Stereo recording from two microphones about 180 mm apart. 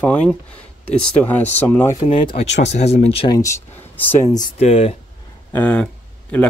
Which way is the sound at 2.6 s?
40° left (ahead or behind).